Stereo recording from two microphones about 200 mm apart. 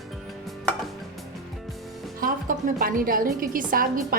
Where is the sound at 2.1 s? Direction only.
45° right (ahead or behind).